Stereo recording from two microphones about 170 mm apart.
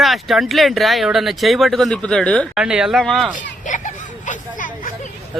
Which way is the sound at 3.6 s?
45° left (ahead or behind).